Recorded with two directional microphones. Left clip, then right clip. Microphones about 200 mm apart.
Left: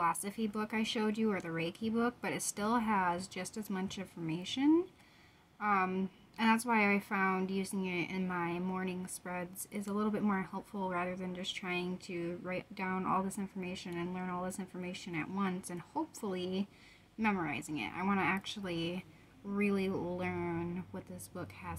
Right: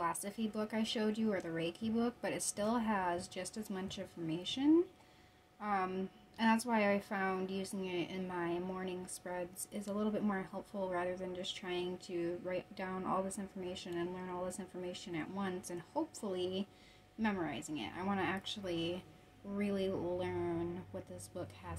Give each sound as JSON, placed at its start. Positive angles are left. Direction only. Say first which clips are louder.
{"t": 0.0, "sound": "a woman's voice", "louder": "left 5 dB", "side_deg": 40}